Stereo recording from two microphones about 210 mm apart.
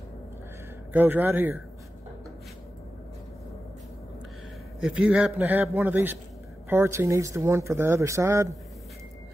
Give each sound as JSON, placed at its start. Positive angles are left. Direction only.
{"t": 0.9, "sound": "speech", "side_deg": -10}
{"t": 4.7, "sound": "speech", "side_deg": -5}